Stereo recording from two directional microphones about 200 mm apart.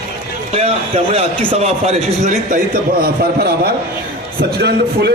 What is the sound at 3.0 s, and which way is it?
A man's voice, 50° right (ahead or behind).